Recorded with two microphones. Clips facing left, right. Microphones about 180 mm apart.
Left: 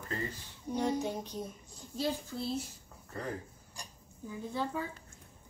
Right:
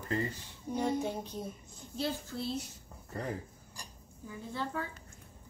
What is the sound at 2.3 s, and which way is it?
Speech, 15° left (ahead or behind).